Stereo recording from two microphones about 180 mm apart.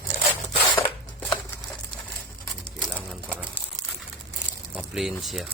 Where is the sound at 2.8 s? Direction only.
5° left (ahead or behind).